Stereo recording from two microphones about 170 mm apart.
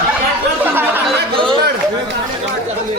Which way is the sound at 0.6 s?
10° right (ahead or behind).